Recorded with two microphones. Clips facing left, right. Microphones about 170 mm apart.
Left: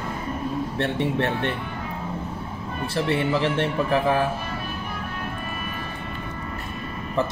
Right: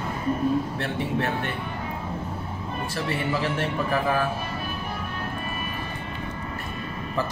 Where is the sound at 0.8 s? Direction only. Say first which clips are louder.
Left 3 dB; 30° left (ahead or behind).